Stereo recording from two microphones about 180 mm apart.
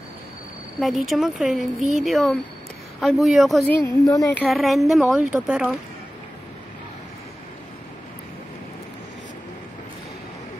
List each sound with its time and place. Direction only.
0.7 s speech: centre (ahead or behind)
3.8 s a woman's voice: 20° left (ahead or behind)
4.4 s speech: centre (ahead or behind)